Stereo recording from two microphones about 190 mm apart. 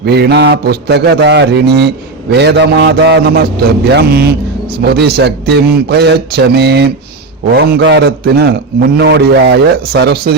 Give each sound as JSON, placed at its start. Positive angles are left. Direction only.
{"t": 0.0, "sound": "a man's voice", "side_deg": -60}